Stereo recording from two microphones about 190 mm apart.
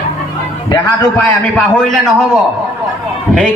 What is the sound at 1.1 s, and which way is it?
Speech, centre (ahead or behind).